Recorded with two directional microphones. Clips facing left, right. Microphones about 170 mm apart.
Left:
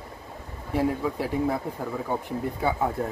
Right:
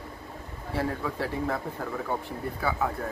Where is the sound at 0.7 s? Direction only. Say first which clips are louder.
Left 5 dB; 15° left (ahead or behind).